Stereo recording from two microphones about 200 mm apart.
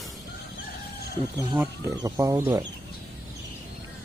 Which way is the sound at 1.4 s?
10° right (ahead or behind).